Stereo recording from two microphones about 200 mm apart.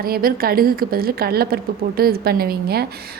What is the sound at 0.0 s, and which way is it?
A woman's voice, 50° right (ahead or behind).